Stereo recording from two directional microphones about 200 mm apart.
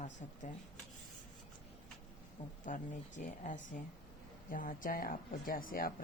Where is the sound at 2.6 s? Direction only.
40° left (ahead or behind).